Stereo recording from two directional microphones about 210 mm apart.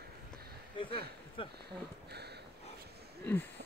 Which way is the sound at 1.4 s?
25° left (ahead or behind).